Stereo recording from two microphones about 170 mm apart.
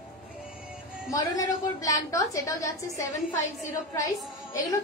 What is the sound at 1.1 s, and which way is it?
A woman's voice, 20° left (ahead or behind).